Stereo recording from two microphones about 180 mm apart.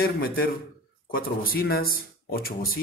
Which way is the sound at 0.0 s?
55° left (ahead or behind).